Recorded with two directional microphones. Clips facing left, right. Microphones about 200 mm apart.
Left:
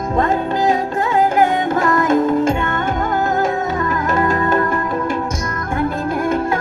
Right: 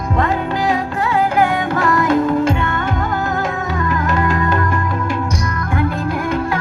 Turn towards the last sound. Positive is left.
turn(degrees=45)  # may be behind; listen again after turning